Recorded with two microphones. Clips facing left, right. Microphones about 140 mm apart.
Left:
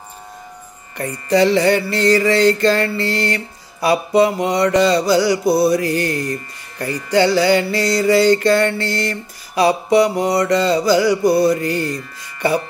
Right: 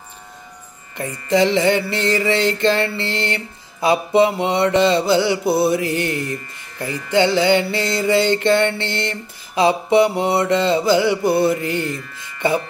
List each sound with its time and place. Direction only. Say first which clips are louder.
1.3 s mantra: left 2 dB; 20° right (ahead or behind)
11.8 s speech: left 2 dB; 40° left (ahead or behind)
12.4 s speech: left 1 dB; 20° right (ahead or behind)